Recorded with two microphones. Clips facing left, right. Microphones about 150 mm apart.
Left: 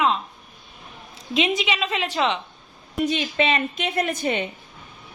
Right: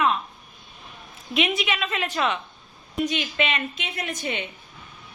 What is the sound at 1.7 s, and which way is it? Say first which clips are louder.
Speech: left 2 dB; 15° left (ahead or behind).